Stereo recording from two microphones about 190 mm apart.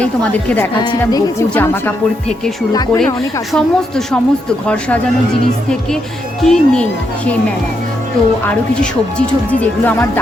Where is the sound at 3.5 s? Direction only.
5° left (ahead or behind).